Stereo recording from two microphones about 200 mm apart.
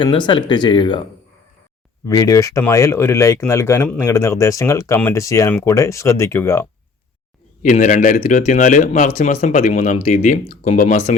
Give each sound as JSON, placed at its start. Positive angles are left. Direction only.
{"t": 0.0, "sound": "speech", "side_deg": 25}
{"t": 2.0, "sound": "speech", "side_deg": 15}
{"t": 7.6, "sound": "speech", "side_deg": 40}